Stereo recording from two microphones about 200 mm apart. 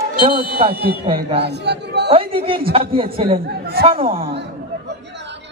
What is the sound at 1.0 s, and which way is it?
Speech, 30° right (ahead or behind).